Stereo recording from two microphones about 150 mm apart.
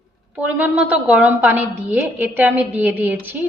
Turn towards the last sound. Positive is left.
turn(degrees=-10)  # may be behind; listen again after turning